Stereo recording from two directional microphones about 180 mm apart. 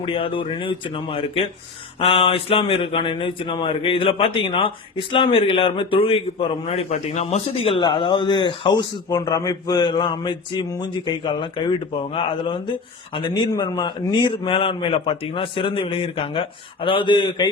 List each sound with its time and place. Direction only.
0.0 s a man's voice: 30° left (ahead or behind)